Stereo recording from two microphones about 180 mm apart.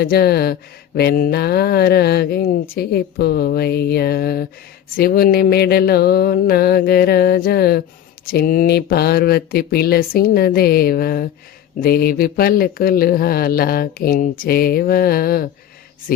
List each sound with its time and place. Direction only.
0.0 s speech: 60° left (ahead or behind)